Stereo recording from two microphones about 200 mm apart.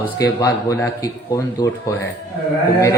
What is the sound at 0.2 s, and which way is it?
Speech, 15° left (ahead or behind).